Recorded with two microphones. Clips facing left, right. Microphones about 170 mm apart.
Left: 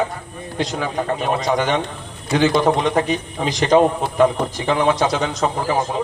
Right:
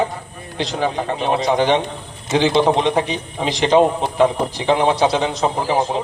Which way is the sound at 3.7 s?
45° left (ahead or behind).